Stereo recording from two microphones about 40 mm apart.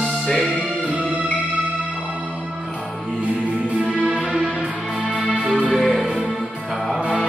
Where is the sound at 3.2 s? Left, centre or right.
Right.